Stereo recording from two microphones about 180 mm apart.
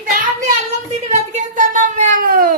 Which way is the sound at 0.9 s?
40° right (ahead or behind).